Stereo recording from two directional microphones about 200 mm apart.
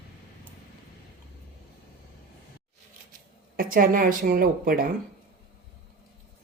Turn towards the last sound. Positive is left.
turn(degrees=-45)  # may be behind; listen again after turning